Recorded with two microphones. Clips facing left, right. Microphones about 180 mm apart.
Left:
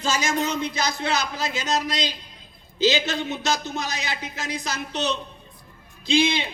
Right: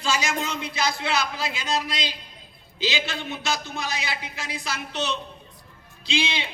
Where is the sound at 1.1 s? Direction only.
40° left (ahead or behind).